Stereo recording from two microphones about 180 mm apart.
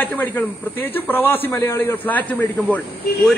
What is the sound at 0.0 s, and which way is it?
A man's voice, 10° left (ahead or behind).